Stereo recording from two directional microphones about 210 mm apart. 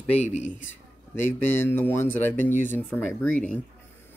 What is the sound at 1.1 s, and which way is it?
Speech, 10° left (ahead or behind).